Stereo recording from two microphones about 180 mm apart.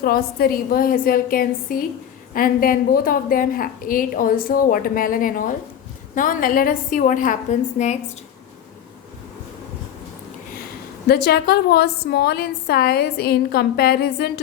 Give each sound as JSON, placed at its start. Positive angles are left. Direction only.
{"t": 0.0, "sound": "a woman's voice", "side_deg": 55}
{"t": 11.1, "sound": "a woman's voice", "side_deg": 60}